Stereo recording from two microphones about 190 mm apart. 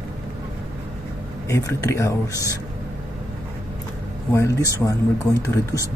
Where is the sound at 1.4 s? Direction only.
15° left (ahead or behind).